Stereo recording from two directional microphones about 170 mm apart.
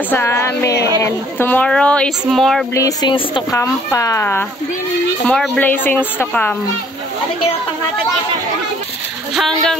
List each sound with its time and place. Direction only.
0.1 s speech: 15° left (ahead or behind)
2.7 s speech: 20° left (ahead or behind)
3.5 s speech: 20° left (ahead or behind)
5.2 s speech: centre (ahead or behind)
9.3 s speech: centre (ahead or behind)